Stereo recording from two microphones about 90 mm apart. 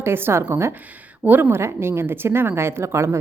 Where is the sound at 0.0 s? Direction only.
25° right (ahead or behind).